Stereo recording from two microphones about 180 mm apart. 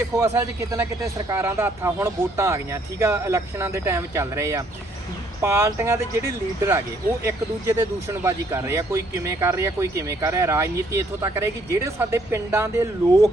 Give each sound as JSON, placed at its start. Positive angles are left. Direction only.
{"t": 0.3, "sound": "speech", "side_deg": -15}